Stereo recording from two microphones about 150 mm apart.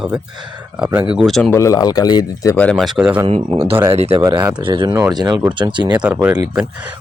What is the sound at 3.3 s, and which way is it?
Speech, 40° right (ahead or behind).